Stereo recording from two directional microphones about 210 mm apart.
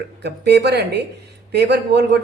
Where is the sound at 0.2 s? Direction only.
55° right (ahead or behind).